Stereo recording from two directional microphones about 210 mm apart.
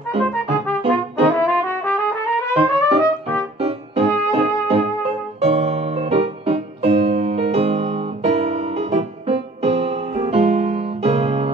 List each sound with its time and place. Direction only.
0.1 s music: 30° right (ahead or behind)
1.4 s trumpet: 10° left (ahead or behind)
2.6 s music: 25° right (ahead or behind)